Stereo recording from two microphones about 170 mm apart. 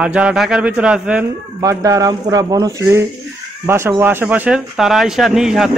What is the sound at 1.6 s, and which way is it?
Speech, 20° right (ahead or behind).